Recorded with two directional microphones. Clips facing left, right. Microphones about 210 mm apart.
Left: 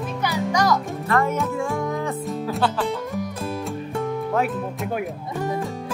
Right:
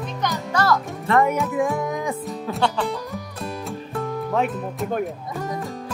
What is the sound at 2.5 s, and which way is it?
Speech, centre (ahead or behind).